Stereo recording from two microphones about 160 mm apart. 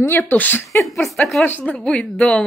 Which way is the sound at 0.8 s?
Centre (ahead or behind).